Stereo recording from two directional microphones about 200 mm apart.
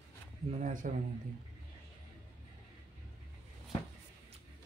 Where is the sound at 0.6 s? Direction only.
40° right (ahead or behind).